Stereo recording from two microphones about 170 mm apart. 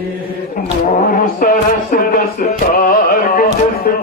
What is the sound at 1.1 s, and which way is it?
Music, 55° left (ahead or behind).